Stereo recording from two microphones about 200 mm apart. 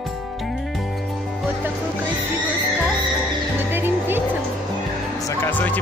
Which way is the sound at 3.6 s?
10° right (ahead or behind).